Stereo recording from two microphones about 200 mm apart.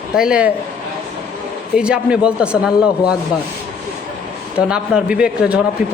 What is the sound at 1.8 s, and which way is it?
Speech, 5° right (ahead or behind).